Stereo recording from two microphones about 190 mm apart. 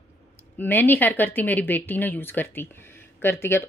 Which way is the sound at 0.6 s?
10° left (ahead or behind).